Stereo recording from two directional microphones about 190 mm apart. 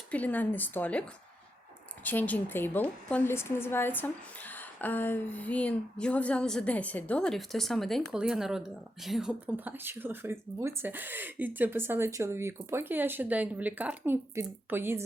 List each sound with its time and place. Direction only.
0.1 s a woman's voice: 10° left (ahead or behind)
2.0 s a woman's voice: 10° left (ahead or behind); by 15.0 s 10° right (ahead or behind)